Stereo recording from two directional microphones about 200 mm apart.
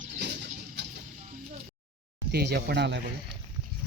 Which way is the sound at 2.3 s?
55° right (ahead or behind).